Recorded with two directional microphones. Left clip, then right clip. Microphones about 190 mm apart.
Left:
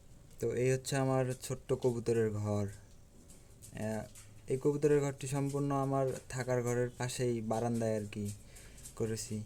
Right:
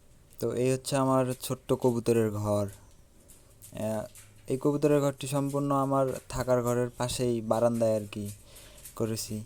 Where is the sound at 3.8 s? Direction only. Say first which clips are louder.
Right 7 dB; 30° right (ahead or behind).